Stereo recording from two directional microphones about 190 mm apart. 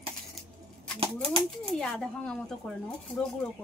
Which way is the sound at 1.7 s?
5° left (ahead or behind).